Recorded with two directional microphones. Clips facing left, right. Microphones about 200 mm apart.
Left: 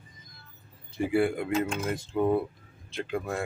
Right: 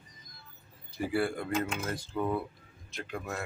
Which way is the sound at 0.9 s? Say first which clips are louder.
Left 5 dB; 20° left (ahead or behind).